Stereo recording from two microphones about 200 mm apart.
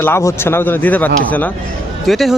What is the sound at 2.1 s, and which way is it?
Speech, centre (ahead or behind).